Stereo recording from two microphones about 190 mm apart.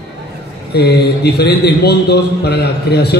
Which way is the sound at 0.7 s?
60° left (ahead or behind).